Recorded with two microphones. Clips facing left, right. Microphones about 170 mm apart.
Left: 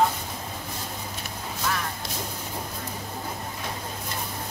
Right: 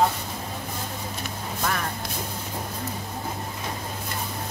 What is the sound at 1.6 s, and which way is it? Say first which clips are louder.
Music: right 1 dB; 50° right (ahead or behind).